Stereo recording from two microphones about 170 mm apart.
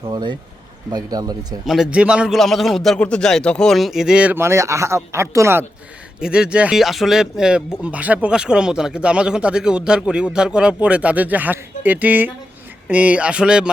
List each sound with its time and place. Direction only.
0.1 s speech: 25° right (ahead or behind)
1.6 s a man's voice: centre (ahead or behind)
6.1 s a man's voice: 5° right (ahead or behind)